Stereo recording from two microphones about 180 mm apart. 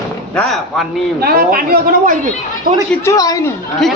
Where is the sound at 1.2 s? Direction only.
55° right (ahead or behind).